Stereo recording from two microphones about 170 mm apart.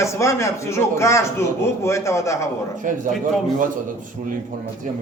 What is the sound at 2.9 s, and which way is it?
Speech, 50° right (ahead or behind).